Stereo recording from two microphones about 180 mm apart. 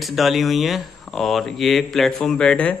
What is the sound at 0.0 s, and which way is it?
Speech, centre (ahead or behind).